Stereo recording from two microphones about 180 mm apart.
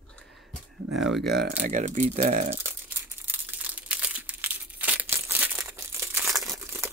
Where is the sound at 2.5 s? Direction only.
10° right (ahead or behind).